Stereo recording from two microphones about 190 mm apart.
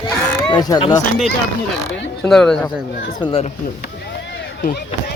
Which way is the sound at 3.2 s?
30° left (ahead or behind).